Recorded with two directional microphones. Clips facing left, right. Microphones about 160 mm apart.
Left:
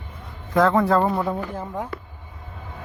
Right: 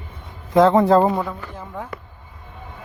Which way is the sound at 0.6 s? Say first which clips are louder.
Right 4 dB; 30° right (ahead or behind).